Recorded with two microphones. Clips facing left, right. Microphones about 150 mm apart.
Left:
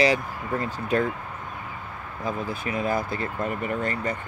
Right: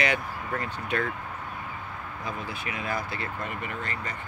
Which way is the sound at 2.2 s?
45° left (ahead or behind).